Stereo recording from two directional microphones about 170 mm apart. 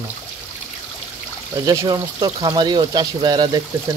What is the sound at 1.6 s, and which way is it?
Speech, 25° right (ahead or behind).